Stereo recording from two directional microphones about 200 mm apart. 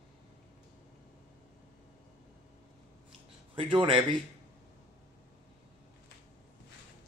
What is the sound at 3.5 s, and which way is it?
Speech, 25° right (ahead or behind).